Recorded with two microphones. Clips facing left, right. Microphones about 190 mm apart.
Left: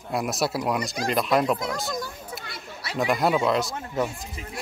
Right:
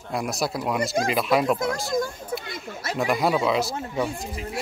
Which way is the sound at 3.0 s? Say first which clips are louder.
Even; centre (ahead or behind).